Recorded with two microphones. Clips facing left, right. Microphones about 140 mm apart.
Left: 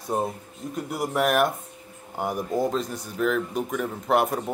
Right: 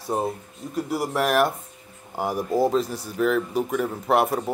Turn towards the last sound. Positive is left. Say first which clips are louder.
# right 2 dB
turn(degrees=-5)  # may be behind; listen again after turning